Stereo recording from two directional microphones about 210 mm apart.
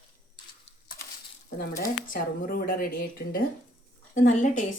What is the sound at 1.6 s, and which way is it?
A woman's voice, 45° left (ahead or behind).